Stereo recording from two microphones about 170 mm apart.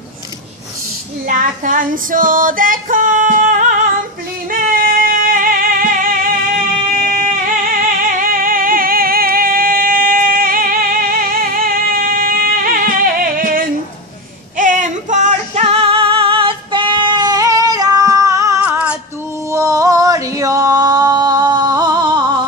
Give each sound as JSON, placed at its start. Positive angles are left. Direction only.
{"t": 1.2, "sound": "female singing", "side_deg": -55}
{"t": 4.5, "sound": "music", "side_deg": -55}
{"t": 7.6, "sound": "music", "side_deg": -60}
{"t": 18.6, "sound": "female singing", "side_deg": -5}
{"t": 19.5, "sound": "a sound", "side_deg": -20}